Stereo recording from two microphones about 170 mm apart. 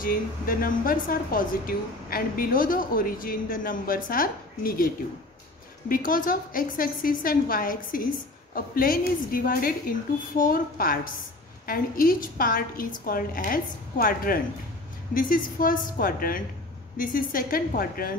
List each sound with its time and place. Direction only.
0.0 s a woman's voice: 55° left (ahead or behind)